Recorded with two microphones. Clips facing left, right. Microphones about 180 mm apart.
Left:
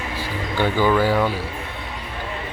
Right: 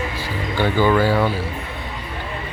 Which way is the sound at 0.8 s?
5° left (ahead or behind).